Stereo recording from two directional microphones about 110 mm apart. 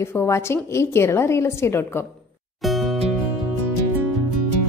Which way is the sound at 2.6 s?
Centre (ahead or behind).